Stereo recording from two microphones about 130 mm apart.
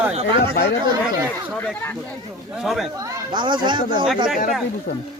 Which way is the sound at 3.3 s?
35° right (ahead or behind).